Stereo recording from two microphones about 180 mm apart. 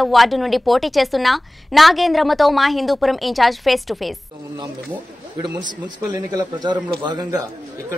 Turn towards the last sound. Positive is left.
turn(degrees=-25)  # may be behind; listen again after turning